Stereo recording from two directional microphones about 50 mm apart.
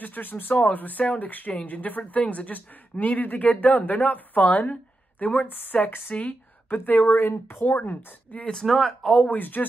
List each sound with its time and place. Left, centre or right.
0.0 s speech: left
8.6 s speech: centre
9.1 s speech: left